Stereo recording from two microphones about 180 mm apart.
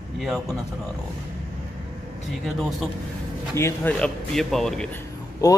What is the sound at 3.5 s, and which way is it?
A man's voice, 10° left (ahead or behind).